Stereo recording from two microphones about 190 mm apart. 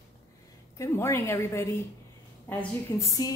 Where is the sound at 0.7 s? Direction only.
15° left (ahead or behind).